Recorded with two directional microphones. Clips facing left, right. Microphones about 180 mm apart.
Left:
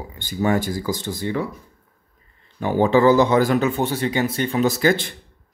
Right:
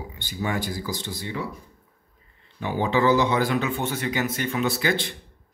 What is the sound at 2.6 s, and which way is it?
Speech, 45° left (ahead or behind).